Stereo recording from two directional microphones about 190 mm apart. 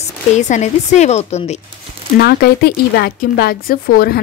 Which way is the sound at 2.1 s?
55° left (ahead or behind).